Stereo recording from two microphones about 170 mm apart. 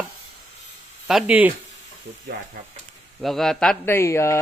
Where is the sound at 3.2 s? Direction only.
Centre (ahead or behind).